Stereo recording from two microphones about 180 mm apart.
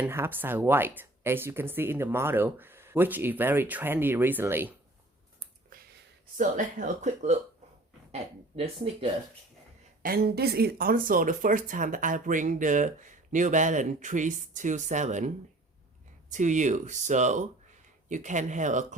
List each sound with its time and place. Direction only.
0.0 s speech: 10° right (ahead or behind)
5.7 s a sound: 50° right (ahead or behind)
6.3 s speech: 45° right (ahead or behind)
10.0 s speech: 55° right (ahead or behind)
16.3 s speech: 45° right (ahead or behind)